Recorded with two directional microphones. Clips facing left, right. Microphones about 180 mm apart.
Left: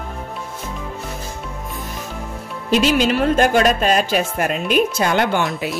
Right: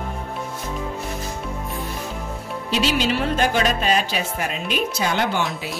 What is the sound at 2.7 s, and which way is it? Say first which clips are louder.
A woman's voice: left 5 dB; 50° left (ahead or behind).